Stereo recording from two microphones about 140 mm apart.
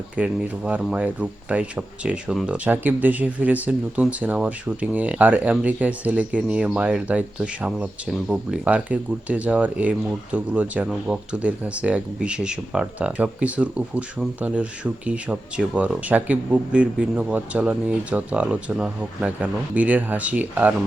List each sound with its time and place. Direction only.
0.2 s speech: 10° right (ahead or behind)